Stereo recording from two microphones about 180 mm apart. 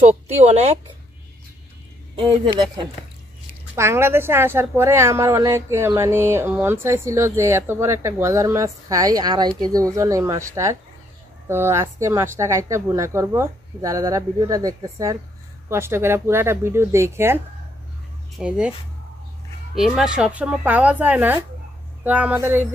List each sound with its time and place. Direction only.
0.5 s speech: 35° right (ahead or behind)
3.7 s a woman's voice: 15° right (ahead or behind)
18.4 s speech: 5° right (ahead or behind)
19.7 s a woman's voice: centre (ahead or behind)